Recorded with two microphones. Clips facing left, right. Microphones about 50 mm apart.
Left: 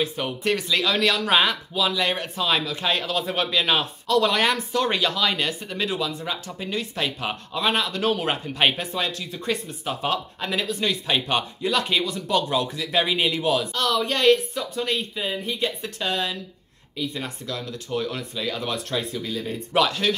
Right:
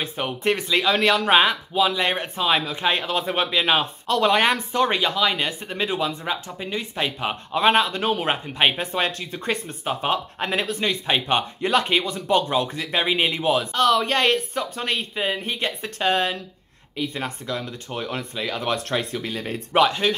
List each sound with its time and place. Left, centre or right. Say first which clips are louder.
0.0 s speech: right 1 dB; right
1.4 s speech: right 3 dB; centre
2.0 s speech: right 1 dB; right
3.8 s speech: even; right
7.5 s speech: right 6 dB; right
12.6 s speech: right 1 dB; right
12.9 s speech: even; right
19.7 s speech: right 3 dB; right